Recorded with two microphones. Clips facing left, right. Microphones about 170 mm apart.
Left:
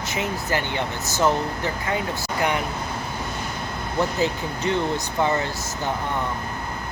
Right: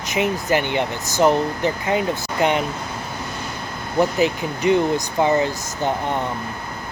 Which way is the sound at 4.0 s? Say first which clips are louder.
Right 5 dB; 15° right (ahead or behind).